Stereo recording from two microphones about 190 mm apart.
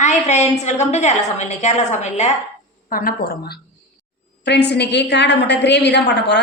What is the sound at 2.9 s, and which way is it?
A woman's voice, 50° left (ahead or behind).